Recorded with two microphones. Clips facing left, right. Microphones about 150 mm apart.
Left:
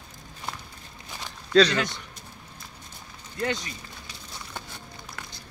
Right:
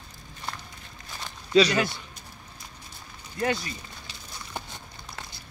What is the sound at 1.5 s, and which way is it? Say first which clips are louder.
Speech: left 1 dB; 10° right (ahead or behind).